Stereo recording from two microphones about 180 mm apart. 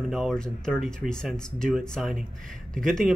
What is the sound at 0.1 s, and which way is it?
Speech, centre (ahead or behind).